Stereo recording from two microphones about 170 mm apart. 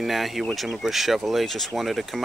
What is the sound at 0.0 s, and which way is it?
Speech, centre (ahead or behind).